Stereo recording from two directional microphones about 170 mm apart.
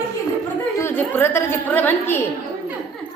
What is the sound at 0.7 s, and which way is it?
A woman's voice, 15° left (ahead or behind).